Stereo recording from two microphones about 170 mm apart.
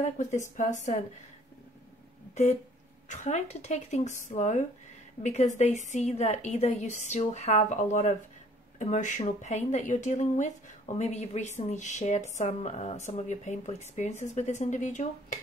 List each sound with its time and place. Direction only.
0.0 s a woman's voice: 45° left (ahead or behind)
3.1 s a woman's voice: 40° left (ahead or behind)